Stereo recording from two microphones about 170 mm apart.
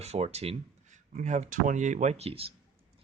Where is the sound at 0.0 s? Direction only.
40° right (ahead or behind).